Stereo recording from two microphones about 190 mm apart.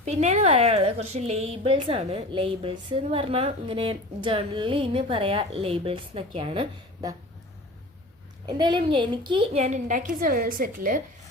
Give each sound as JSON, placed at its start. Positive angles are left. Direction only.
{"t": 0.0, "sound": "a woman's voice", "side_deg": -35}
{"t": 8.4, "sound": "a woman's voice", "side_deg": -25}
{"t": 9.6, "sound": "a woman's voice", "side_deg": -40}